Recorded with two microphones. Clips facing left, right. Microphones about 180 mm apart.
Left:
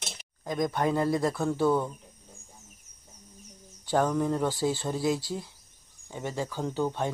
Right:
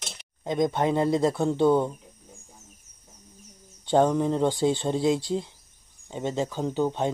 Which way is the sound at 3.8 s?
25° right (ahead or behind).